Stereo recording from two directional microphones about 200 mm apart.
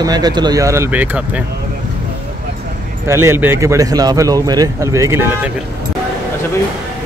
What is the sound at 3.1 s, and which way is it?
Speech, 15° right (ahead or behind).